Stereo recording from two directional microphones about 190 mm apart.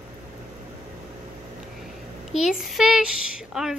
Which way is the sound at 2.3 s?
Centre (ahead or behind).